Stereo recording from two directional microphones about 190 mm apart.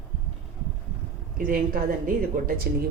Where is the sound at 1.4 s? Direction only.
45° right (ahead or behind).